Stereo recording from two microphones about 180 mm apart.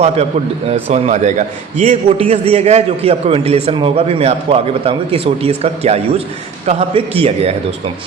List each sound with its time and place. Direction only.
0.7 s a man's voice: 35° right (ahead or behind)